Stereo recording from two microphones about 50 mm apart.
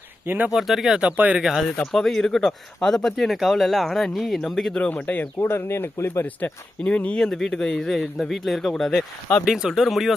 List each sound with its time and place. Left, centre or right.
0.5 s speech: centre; by 1.4 s right
1.4 s speech: centre
1.9 s speech: centre
4.8 s speech: left
5.5 s speech: left
6.2 s speech: left
7.2 s speech: centre